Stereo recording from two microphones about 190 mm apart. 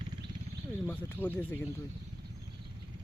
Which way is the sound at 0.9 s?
10° left (ahead or behind).